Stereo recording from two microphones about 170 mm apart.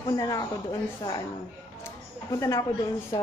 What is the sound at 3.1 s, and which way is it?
Speech, 25° left (ahead or behind).